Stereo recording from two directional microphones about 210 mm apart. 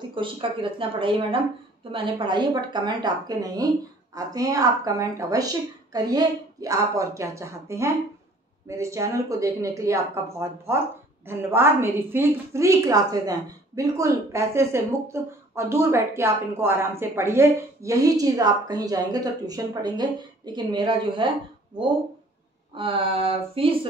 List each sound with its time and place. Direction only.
0.1 s a woman's voice: 25° right (ahead or behind)
22.8 s speech: 25° right (ahead or behind)